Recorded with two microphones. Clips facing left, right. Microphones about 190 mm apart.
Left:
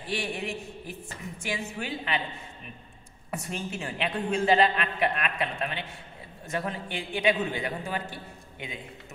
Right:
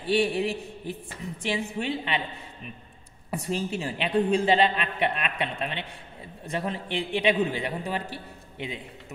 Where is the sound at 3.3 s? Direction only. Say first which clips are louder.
Right 5 dB; 30° right (ahead or behind).